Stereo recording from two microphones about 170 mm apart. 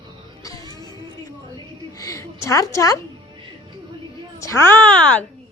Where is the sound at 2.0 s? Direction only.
20° left (ahead or behind).